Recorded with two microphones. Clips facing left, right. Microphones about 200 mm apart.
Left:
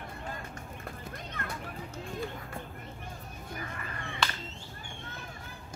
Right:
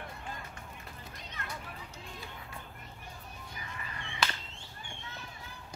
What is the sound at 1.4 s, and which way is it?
Children playing, 50° left (ahead or behind).